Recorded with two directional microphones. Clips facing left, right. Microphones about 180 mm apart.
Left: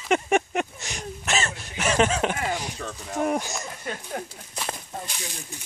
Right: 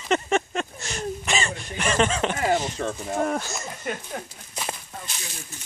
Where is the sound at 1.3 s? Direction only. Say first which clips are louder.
Left 3 dB; centre (ahead or behind).